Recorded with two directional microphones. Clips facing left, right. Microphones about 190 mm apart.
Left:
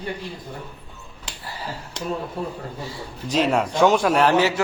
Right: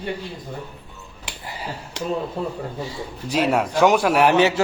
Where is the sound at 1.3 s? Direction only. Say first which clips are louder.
Right 1 dB; 15° right (ahead or behind).